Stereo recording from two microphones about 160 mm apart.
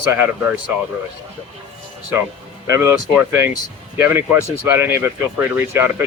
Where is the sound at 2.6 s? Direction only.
20° right (ahead or behind).